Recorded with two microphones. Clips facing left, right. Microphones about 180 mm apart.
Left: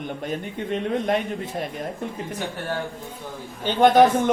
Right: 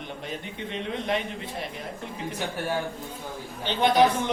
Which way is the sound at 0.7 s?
45° left (ahead or behind).